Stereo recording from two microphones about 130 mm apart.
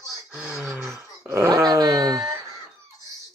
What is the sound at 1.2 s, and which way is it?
Dog, 20° right (ahead or behind).